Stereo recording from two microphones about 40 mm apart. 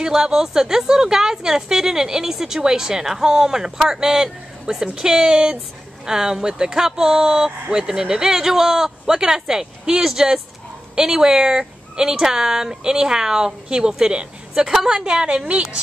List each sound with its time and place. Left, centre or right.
0.0 s speech: centre